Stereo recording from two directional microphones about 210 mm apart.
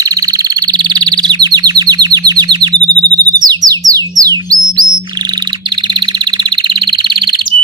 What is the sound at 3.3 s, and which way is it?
Chirp tone, 20° right (ahead or behind).